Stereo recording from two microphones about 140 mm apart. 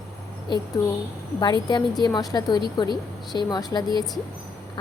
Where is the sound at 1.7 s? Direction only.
30° left (ahead or behind).